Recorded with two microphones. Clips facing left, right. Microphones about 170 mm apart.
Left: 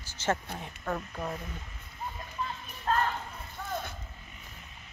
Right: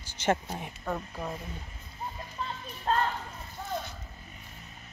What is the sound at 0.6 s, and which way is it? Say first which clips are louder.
Speech: even; 10° right (ahead or behind).